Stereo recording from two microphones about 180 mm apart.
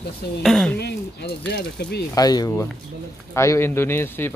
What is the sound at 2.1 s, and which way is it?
A man's voice, 20° left (ahead or behind).